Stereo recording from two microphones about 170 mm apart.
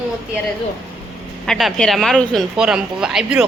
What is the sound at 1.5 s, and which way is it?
Speech, centre (ahead or behind).